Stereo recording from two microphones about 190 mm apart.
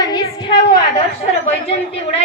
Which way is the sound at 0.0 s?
20° left (ahead or behind).